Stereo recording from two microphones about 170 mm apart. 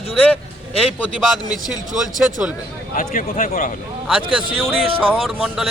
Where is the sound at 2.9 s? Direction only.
55° left (ahead or behind).